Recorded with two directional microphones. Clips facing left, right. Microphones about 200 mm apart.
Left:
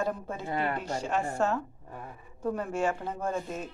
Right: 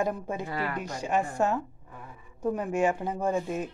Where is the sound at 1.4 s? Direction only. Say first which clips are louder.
Right 2 dB; 10° right (ahead or behind).